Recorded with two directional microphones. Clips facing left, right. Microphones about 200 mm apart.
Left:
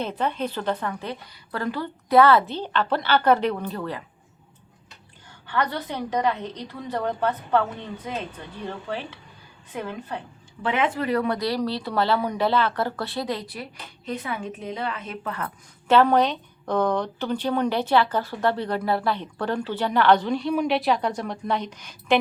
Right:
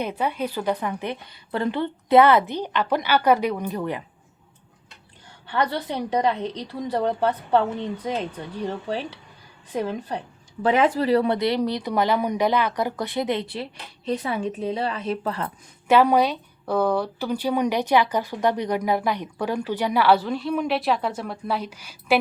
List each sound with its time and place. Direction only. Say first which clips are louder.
0.0 s speech: right 1 dB; 10° right (ahead or behind)
5.5 s a woman's voice: right 2 dB; 30° right (ahead or behind)
15.4 s speech: even; 10° right (ahead or behind)